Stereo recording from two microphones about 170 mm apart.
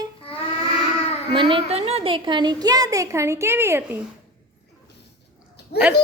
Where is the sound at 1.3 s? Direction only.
30° right (ahead or behind); by 4.0 s 10° right (ahead or behind).